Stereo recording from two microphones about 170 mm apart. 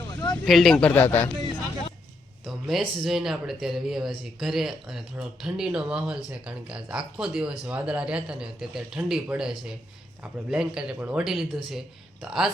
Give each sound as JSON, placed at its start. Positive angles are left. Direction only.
{"t": 0.1, "sound": "a sound", "side_deg": 25}
{"t": 0.4, "sound": "a man's voice", "side_deg": 0}
{"t": 2.4, "sound": "speech", "side_deg": 0}